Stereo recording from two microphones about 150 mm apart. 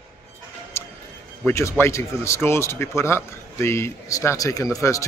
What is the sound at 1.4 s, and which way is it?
Speech, 20° left (ahead or behind).